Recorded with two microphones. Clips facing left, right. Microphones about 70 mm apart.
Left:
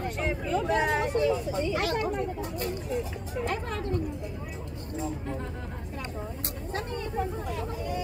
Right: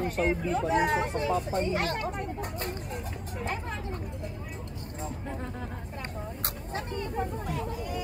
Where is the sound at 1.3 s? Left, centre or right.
Right.